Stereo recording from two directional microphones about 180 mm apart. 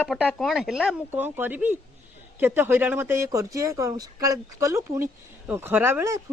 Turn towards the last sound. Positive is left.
turn(degrees=-15)  # may be behind; listen again after turning